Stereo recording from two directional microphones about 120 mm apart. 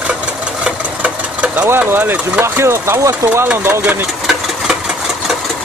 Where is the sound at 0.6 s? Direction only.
10° right (ahead or behind).